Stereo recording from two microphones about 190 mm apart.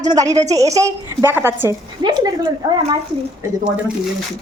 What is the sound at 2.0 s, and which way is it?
Speech, 20° right (ahead or behind).